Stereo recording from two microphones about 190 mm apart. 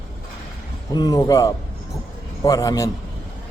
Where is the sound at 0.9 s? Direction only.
20° left (ahead or behind).